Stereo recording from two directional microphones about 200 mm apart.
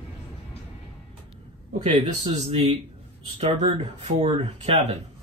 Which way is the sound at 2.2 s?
30° right (ahead or behind).